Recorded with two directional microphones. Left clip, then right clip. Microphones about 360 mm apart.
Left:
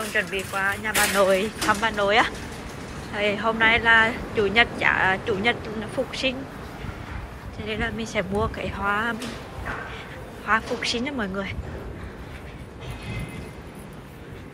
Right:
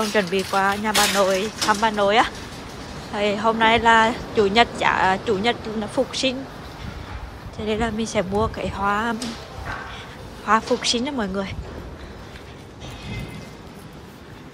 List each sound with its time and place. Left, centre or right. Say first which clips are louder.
0.1 s speech: right 5 dB; centre
7.6 s speech: right 5 dB; centre
10.4 s speech: right 4 dB; centre